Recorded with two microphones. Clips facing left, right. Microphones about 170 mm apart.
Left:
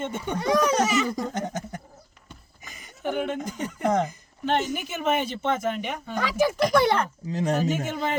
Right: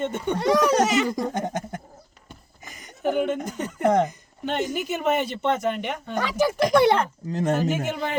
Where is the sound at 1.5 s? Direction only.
55° right (ahead or behind).